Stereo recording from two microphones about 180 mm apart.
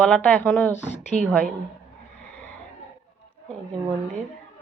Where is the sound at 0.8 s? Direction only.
40° left (ahead or behind).